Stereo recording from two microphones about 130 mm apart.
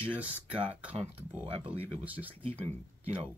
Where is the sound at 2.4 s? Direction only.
55° right (ahead or behind).